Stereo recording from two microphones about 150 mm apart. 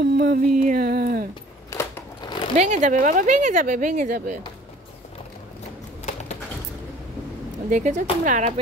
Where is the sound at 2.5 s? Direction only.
55° right (ahead or behind).